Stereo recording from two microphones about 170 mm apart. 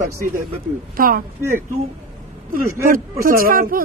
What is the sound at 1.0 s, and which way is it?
Speech, 60° right (ahead or behind).